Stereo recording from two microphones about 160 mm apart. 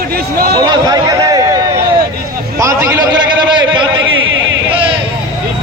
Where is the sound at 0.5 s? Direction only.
25° right (ahead or behind).